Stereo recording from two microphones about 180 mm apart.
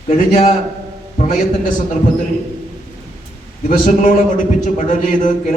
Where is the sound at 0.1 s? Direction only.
40° left (ahead or behind).